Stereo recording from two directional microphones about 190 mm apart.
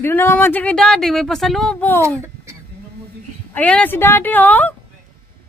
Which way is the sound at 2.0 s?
15° right (ahead or behind).